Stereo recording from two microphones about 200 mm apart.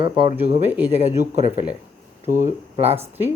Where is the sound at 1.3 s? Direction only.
35° right (ahead or behind).